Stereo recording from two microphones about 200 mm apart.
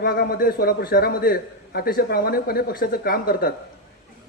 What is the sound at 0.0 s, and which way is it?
A man's voice, 45° left (ahead or behind).